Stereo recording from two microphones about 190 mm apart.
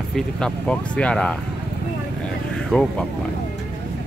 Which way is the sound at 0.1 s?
5° left (ahead or behind).